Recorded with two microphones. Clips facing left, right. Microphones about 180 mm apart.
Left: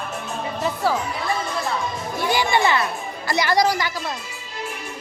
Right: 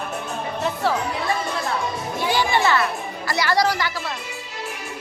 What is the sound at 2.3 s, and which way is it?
A child's voice, 15° left (ahead or behind).